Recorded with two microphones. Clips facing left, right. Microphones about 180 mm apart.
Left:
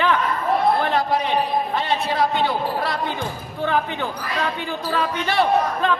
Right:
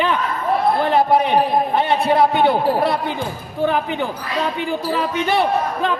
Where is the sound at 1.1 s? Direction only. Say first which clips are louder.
Right 5 dB; 55° right (ahead or behind).